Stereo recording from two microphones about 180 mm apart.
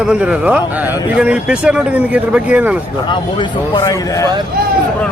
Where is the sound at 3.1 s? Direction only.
25° left (ahead or behind).